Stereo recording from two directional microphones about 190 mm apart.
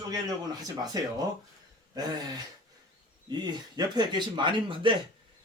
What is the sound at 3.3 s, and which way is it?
Speech, 20° right (ahead or behind).